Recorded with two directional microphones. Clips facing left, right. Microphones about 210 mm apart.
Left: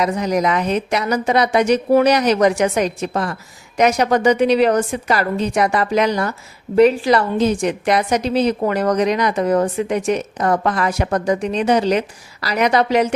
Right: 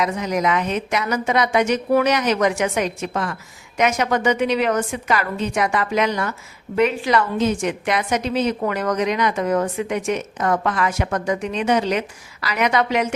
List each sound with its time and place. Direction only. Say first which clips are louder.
0.0 s a woman's voice: left 3 dB; 35° left (ahead or behind)